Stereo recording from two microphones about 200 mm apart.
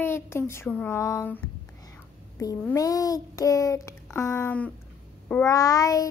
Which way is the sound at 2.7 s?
20° left (ahead or behind).